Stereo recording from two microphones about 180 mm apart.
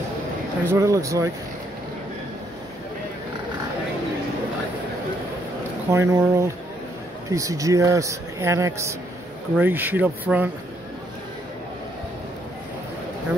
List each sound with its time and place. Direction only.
0.7 s speech: 15° right (ahead or behind)
5.9 s speech: 15° right (ahead or behind)